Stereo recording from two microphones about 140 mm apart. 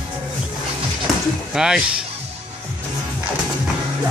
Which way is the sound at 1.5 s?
5° right (ahead or behind).